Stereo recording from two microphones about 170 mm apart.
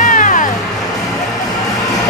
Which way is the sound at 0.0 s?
50° left (ahead or behind).